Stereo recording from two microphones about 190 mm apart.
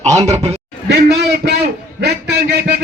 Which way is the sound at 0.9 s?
55° right (ahead or behind).